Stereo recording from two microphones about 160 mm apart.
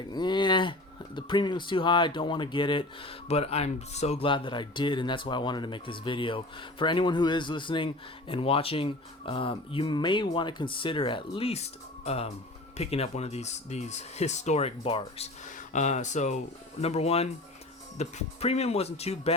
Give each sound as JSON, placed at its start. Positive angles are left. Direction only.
{"t": 0.0, "sound": "speech", "side_deg": 25}
{"t": 15.7, "sound": "speech", "side_deg": 50}